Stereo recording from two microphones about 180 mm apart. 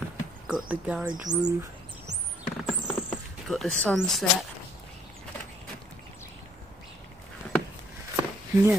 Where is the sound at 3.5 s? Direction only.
Centre (ahead or behind).